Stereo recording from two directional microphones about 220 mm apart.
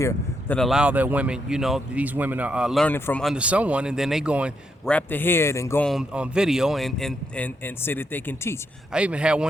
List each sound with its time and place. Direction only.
0.0 s speech: 10° left (ahead or behind); by 4.5 s 5° right (ahead or behind)
4.9 s speech: 5° left (ahead or behind)
8.9 s speech: 5° right (ahead or behind)